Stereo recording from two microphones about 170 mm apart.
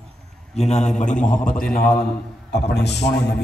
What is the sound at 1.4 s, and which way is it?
A man's voice, 60° left (ahead or behind).